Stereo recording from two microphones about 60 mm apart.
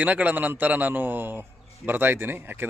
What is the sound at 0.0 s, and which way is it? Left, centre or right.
Speech, right.